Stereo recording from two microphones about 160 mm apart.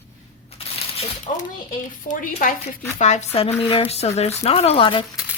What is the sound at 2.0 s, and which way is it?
Speech, 55° left (ahead or behind).